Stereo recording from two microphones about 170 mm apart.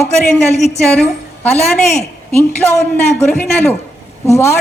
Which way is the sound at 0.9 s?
5° left (ahead or behind).